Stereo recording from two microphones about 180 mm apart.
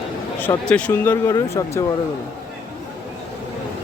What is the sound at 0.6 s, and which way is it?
Speech, 5° left (ahead or behind).